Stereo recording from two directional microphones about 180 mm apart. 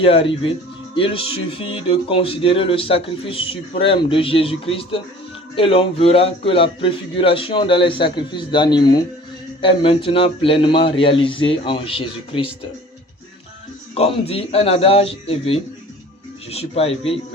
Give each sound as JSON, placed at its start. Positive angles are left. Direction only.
{"t": 0.0, "sound": "a man's voice", "side_deg": 30}
{"t": 13.9, "sound": "speech", "side_deg": 35}